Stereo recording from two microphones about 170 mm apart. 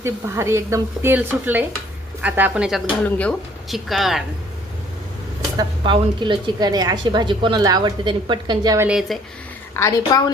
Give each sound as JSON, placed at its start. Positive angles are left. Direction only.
{"t": 0.0, "sound": "a woman's voice", "side_deg": -15}
{"t": 5.5, "sound": "a woman's voice", "side_deg": -30}
{"t": 8.9, "sound": "a woman's voice", "side_deg": 0}
{"t": 9.7, "sound": "a woman's voice", "side_deg": 20}